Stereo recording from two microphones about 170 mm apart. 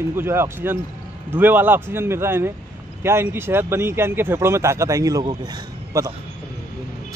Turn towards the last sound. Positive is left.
turn(degrees=-20)  # may be behind; listen again after turning